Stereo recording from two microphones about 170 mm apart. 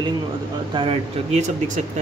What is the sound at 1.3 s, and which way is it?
Speech, 45° right (ahead or behind).